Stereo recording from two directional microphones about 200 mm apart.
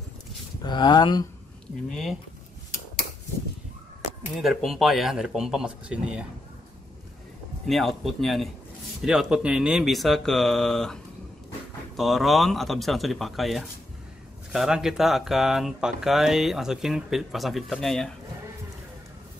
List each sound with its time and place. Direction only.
0.6 s speech: 20° left (ahead or behind)
1.9 s speech: centre (ahead or behind)
4.4 s speech: centre (ahead or behind)
7.6 s speech: centre (ahead or behind)
12.0 s speech: centre (ahead or behind)